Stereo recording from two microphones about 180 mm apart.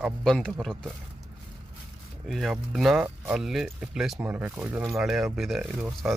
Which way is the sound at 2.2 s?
Centre (ahead or behind).